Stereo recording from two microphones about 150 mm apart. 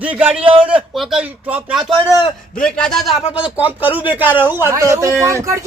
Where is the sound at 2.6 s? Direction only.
5° left (ahead or behind).